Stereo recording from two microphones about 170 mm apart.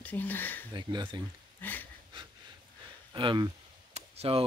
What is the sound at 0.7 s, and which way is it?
Speech, 25° right (ahead or behind).